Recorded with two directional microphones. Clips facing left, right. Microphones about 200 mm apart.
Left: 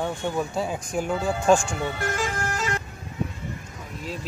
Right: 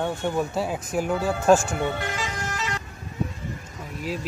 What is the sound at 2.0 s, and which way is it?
Bagpipes, 50° left (ahead or behind).